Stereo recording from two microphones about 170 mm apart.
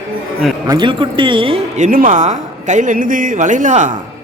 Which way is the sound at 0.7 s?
30° right (ahead or behind).